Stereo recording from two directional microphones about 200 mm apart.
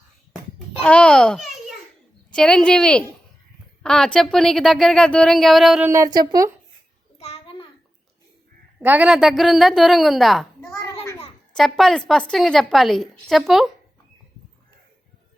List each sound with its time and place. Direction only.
0.9 s a child's voice: 5° left (ahead or behind)
5.9 s speech: 15° right (ahead or behind)
7.2 s a sound: 30° left (ahead or behind)
8.8 s a woman's voice: 10° right (ahead or behind)